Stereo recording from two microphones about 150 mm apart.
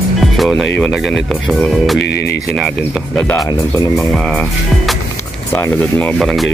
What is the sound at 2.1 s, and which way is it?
Speech, 90° left.